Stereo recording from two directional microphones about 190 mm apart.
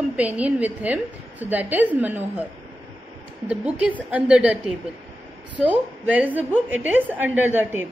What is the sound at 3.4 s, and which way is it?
A woman's voice, 5° right (ahead or behind).